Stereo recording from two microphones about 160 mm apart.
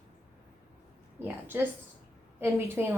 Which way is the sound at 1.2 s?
15° right (ahead or behind).